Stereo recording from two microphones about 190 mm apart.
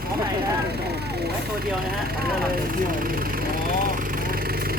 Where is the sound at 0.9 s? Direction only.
60° right (ahead or behind).